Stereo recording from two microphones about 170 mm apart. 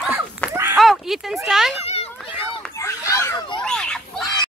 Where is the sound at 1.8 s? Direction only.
35° left (ahead or behind).